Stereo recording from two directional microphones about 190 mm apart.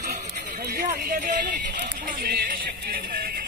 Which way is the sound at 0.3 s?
55° right (ahead or behind).